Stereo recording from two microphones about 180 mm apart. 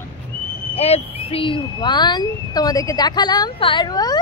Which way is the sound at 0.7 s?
35° left (ahead or behind).